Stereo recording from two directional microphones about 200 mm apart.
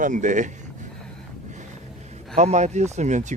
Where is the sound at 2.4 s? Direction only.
35° right (ahead or behind).